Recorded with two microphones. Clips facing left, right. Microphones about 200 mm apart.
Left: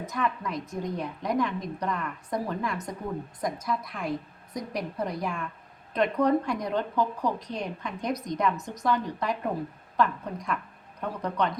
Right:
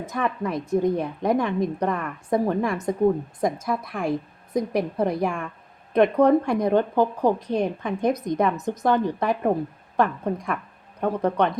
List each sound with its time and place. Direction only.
0.1 s a woman's voice: 55° right (ahead or behind)